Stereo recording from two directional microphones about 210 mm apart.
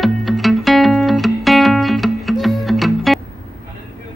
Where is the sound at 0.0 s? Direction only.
Centre (ahead or behind).